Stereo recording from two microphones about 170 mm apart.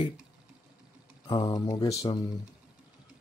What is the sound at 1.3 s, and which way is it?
Speech, 20° left (ahead or behind).